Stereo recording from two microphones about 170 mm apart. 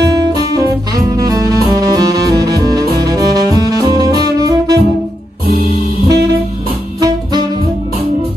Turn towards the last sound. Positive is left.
turn(degrees=-20)  # may be behind; listen again after turning